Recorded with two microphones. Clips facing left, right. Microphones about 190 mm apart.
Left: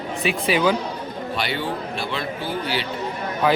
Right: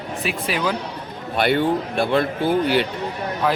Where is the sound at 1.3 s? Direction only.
55° right (ahead or behind).